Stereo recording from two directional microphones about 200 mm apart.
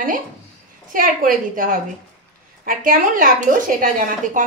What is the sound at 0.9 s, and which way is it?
A woman's voice, 45° right (ahead or behind).